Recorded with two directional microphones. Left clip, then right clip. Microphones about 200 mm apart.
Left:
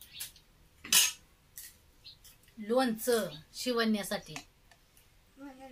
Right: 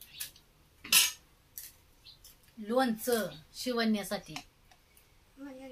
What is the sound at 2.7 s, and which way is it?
Speech, 20° left (ahead or behind).